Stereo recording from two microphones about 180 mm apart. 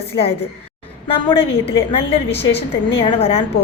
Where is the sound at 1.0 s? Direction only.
30° left (ahead or behind).